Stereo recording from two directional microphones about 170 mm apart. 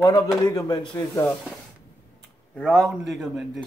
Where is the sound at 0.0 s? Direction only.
25° left (ahead or behind).